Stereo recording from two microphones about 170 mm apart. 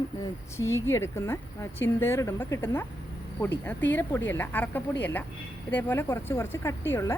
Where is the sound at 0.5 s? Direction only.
15° left (ahead or behind).